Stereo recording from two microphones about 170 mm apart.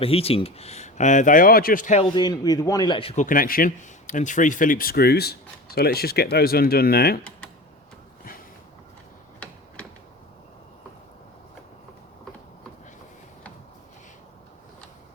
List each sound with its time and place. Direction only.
0.0 s speech: 35° left (ahead or behind)
2.1 s a man's voice: 25° left (ahead or behind)
3.2 s speech: 55° left (ahead or behind)